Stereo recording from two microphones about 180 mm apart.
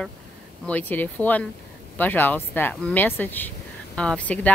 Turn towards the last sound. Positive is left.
turn(degrees=5)  # may be behind; listen again after turning